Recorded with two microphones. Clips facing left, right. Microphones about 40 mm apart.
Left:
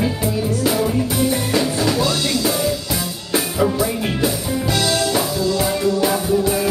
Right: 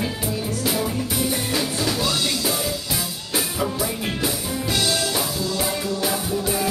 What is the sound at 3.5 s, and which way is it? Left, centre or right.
Music, centre.